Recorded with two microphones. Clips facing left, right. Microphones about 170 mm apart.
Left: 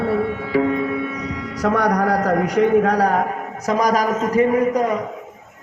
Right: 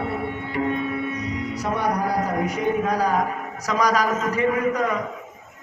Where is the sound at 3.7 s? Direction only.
45° left (ahead or behind).